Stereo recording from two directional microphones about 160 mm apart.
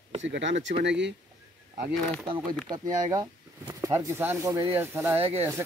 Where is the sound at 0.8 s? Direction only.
90° right.